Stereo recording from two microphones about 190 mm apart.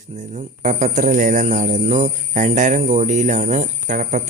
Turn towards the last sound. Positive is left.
turn(degrees=-45)  # may be behind; listen again after turning